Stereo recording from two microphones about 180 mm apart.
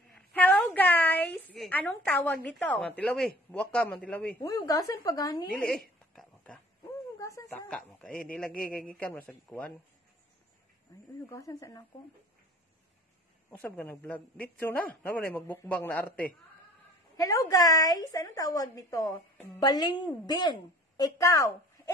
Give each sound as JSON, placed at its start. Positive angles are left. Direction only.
{"t": 0.1, "sound": "a sound", "side_deg": 10}
{"t": 1.3, "sound": "a woman's voice", "side_deg": 5}
{"t": 4.4, "sound": "a woman's voice", "side_deg": 20}
{"t": 5.5, "sound": "a sound", "side_deg": 5}
{"t": 7.2, "sound": "a man's voice", "side_deg": 15}
{"t": 11.2, "sound": "a man's voice", "side_deg": 15}
{"t": 13.5, "sound": "a man's voice", "side_deg": 10}
{"t": 17.2, "sound": "a woman's voice", "side_deg": 20}